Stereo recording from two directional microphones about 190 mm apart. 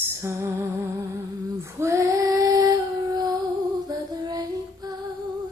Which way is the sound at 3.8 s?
20° right (ahead or behind).